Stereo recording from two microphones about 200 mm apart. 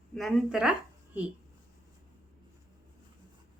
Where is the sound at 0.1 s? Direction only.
Centre (ahead or behind).